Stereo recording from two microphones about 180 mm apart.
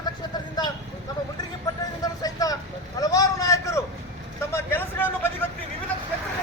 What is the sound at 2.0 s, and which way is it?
Vehicle, 20° left (ahead or behind).